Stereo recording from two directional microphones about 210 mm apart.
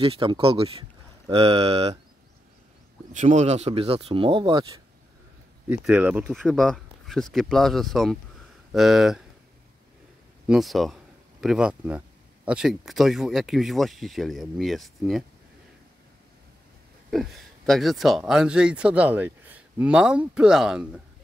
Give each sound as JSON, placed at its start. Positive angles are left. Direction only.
{"t": 0.0, "sound": "speech", "side_deg": -25}
{"t": 3.1, "sound": "speech", "side_deg": -35}
{"t": 5.7, "sound": "speech", "side_deg": -5}
{"t": 10.5, "sound": "speech", "side_deg": 0}
{"t": 17.1, "sound": "speech", "side_deg": 0}